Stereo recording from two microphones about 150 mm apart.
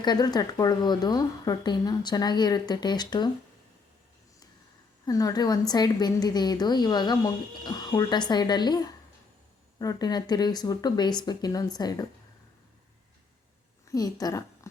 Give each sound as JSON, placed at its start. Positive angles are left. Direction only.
{"t": 0.0, "sound": "a woman's voice", "side_deg": 25}
{"t": 5.0, "sound": "a woman's voice", "side_deg": 25}
{"t": 13.8, "sound": "a woman's voice", "side_deg": 25}